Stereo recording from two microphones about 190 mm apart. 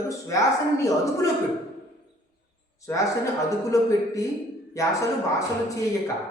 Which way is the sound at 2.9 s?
15° left (ahead or behind).